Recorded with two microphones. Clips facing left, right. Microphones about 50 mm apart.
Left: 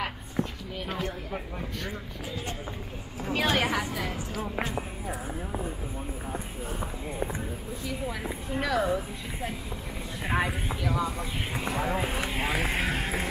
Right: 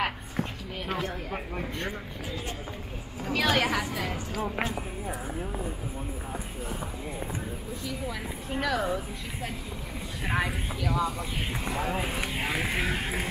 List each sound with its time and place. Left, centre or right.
0.4 s a sound: centre
0.8 s speech: right
3.3 s a woman's voice: centre
4.7 s a woman's voice: centre
8.5 s a woman's voice: centre